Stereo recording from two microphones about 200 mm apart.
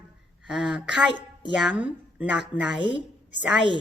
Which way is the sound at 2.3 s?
60° left (ahead or behind).